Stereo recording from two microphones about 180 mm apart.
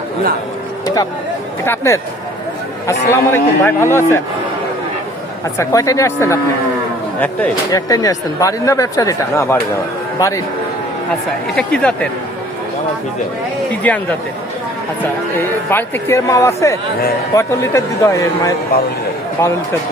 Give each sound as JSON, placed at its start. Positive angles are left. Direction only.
{"t": 1.6, "sound": "speech", "side_deg": 15}
{"t": 5.5, "sound": "speech", "side_deg": 20}
{"t": 7.7, "sound": "speech", "side_deg": 20}
{"t": 11.5, "sound": "speech", "side_deg": 5}
{"t": 13.8, "sound": "speech", "side_deg": 10}
{"t": 15.7, "sound": "speech", "side_deg": 15}